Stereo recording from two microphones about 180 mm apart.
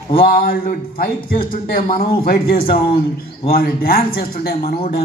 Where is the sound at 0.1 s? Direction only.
55° left (ahead or behind).